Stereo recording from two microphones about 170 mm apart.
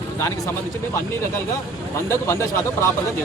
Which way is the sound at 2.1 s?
15° left (ahead or behind).